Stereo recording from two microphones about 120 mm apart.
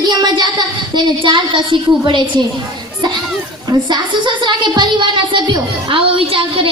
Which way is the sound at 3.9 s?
40° right (ahead or behind).